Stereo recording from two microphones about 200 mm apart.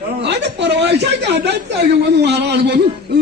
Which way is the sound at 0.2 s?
60° right (ahead or behind).